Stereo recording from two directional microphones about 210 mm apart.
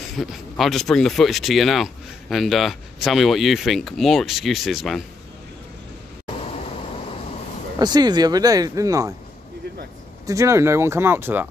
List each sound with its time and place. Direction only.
0.2 s speech: centre (ahead or behind)
7.8 s speech: 20° right (ahead or behind)
10.2 s speech: 15° right (ahead or behind)